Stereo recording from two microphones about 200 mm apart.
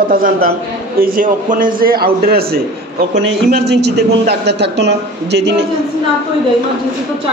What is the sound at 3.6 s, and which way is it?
A man's voice, 55° right (ahead or behind).